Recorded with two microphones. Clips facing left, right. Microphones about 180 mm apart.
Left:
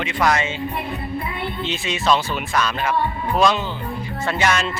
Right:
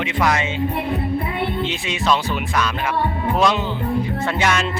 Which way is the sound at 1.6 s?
15° right (ahead or behind).